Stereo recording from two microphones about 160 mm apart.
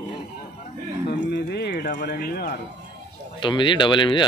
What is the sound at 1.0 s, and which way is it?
Music, 90° left.